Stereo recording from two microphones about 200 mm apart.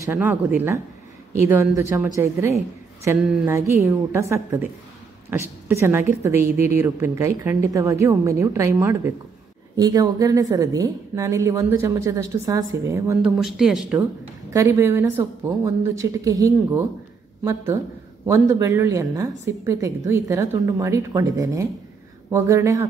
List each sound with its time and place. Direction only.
0.0 s a woman's voice: 10° right (ahead or behind)
13.4 s speech: centre (ahead or behind)
14.5 s a woman's voice: 15° right (ahead or behind)
18.2 s a woman's voice: 15° right (ahead or behind)